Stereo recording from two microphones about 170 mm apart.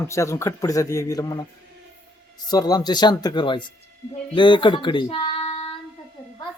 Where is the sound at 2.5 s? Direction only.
20° left (ahead or behind).